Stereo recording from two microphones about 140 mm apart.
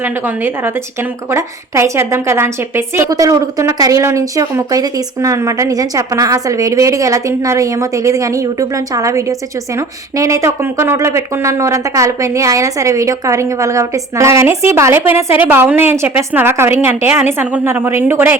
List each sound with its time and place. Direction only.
0.0 s a woman's voice: 15° right (ahead or behind)